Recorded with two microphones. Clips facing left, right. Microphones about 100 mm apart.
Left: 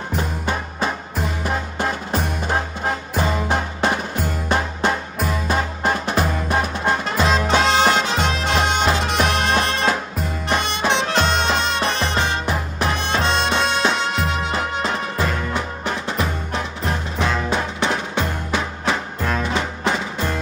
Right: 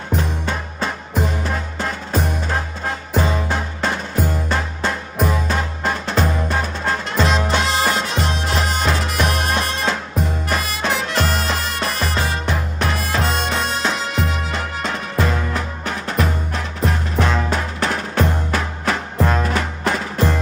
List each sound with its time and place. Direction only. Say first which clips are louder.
0.1 s music: right 2 dB; 5° left (ahead or behind)
10.5 s music: left 4 dB; 25° left (ahead or behind)
12.4 s music: even; 5° left (ahead or behind)
12.9 s music: left 1 dB; 30° left (ahead or behind)
13.2 s music: left 3 dB; 5° right (ahead or behind)